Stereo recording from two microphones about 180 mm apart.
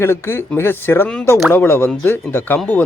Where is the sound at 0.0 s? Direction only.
10° left (ahead or behind).